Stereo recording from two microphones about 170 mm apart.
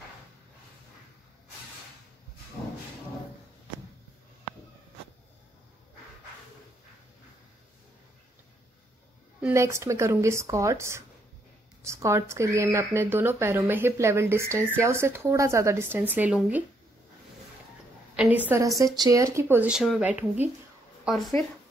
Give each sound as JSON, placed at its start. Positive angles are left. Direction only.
{"t": 9.4, "sound": "speech", "side_deg": -15}
{"t": 18.1, "sound": "speech", "side_deg": -10}